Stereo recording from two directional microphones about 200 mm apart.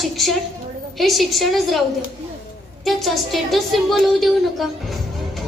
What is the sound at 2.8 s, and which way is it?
A woman's voice, centre (ahead or behind).